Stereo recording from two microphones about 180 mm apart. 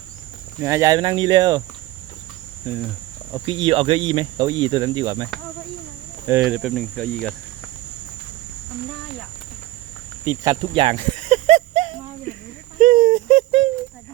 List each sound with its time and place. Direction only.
0.6 s speech: 15° right (ahead or behind)
2.6 s cricket: 10° right (ahead or behind)
3.4 s speech: 30° right (ahead or behind)
6.4 s cricket: 5° right (ahead or behind)
10.2 s speech: 20° right (ahead or behind); by 11.9 s 35° right (ahead or behind)
12.8 s a sound: 50° right (ahead or behind)